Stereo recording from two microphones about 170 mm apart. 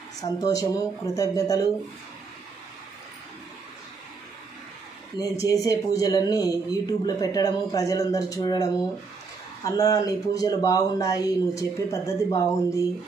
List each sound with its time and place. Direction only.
0.2 s speech: 20° left (ahead or behind)
5.1 s speech: 20° left (ahead or behind)